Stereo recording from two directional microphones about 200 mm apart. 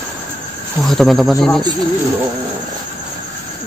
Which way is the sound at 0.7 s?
Centre (ahead or behind).